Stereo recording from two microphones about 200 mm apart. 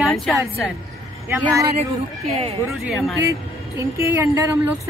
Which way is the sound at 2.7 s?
Centre (ahead or behind).